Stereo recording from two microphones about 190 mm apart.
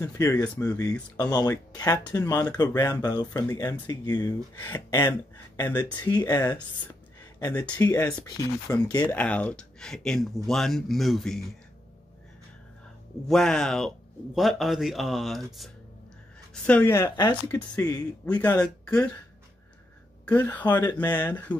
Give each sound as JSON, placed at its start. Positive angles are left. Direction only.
{"t": 0.0, "sound": "speech", "side_deg": 15}
{"t": 9.1, "sound": "speech", "side_deg": 5}
{"t": 13.3, "sound": "speech", "side_deg": 0}
{"t": 18.2, "sound": "speech", "side_deg": 5}
{"t": 20.2, "sound": "speech", "side_deg": 10}